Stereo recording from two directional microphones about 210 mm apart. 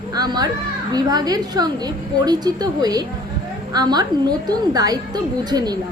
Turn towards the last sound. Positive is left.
turn(degrees=-20)  # may be behind; listen again after turning